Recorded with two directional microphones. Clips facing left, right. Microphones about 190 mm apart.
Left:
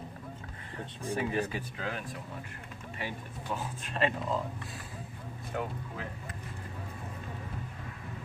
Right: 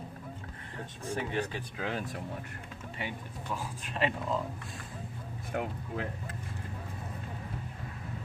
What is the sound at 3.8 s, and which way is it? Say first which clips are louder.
Speech: left 1 dB; 15° right (ahead or behind).